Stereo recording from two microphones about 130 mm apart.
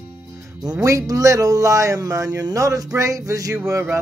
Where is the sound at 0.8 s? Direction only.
25° right (ahead or behind).